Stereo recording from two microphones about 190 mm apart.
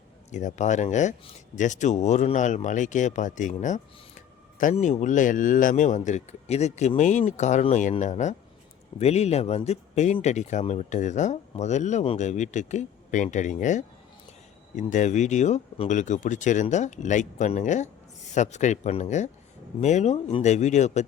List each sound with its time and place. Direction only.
0.3 s speech: 40° left (ahead or behind)